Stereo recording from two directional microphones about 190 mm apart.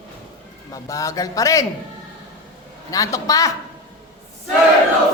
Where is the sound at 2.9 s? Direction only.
15° left (ahead or behind).